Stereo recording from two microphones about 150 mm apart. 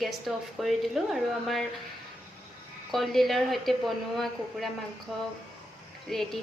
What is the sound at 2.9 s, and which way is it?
A woman's voice, centre (ahead or behind).